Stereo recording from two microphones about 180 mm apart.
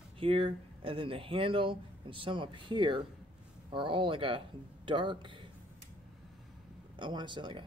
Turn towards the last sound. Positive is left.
turn(degrees=-25)  # may be behind; listen again after turning